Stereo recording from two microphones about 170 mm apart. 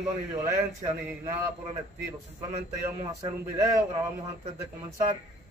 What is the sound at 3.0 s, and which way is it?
A man's voice, 20° right (ahead or behind).